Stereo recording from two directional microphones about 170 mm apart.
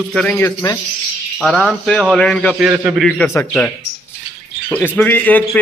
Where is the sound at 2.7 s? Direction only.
15° right (ahead or behind).